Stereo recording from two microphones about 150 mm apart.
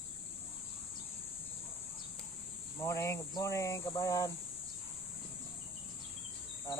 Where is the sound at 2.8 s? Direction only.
20° left (ahead or behind).